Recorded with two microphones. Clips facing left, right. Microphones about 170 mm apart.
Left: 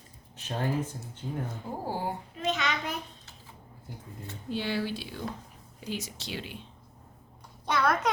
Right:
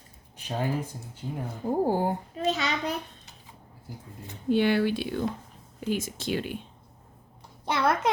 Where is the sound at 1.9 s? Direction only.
50° right (ahead or behind).